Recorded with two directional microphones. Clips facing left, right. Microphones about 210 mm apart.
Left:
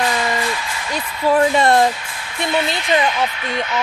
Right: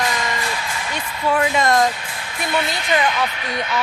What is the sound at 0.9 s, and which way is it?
Speech, 35° left (ahead or behind).